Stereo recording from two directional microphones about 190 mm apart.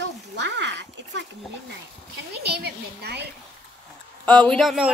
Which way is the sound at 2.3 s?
60° right (ahead or behind).